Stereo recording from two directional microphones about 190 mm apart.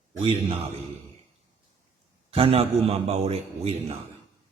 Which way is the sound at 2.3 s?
30° right (ahead or behind).